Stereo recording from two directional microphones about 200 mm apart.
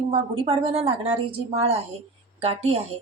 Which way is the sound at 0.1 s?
30° right (ahead or behind).